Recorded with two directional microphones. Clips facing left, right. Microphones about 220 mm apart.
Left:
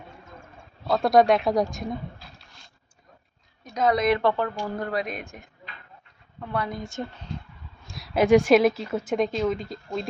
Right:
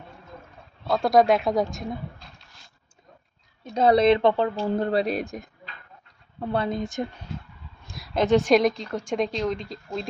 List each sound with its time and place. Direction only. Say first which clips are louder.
0.9 s a woman's voice: even; centre (ahead or behind)
3.6 s speech: right 4 dB; 30° right (ahead or behind)
7.9 s a woman's voice: left 2 dB; centre (ahead or behind)